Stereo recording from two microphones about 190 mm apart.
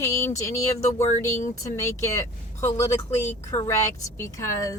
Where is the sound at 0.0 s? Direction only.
15° left (ahead or behind).